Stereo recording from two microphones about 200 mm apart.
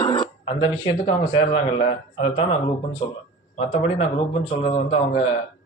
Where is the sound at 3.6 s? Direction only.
30° left (ahead or behind).